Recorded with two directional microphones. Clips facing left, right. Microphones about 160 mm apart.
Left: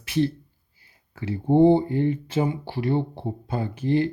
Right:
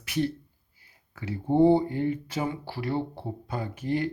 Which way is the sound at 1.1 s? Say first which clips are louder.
Left 4 dB; 25° left (ahead or behind).